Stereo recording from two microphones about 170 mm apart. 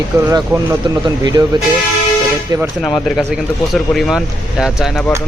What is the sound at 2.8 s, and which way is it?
Speech, 5° left (ahead or behind).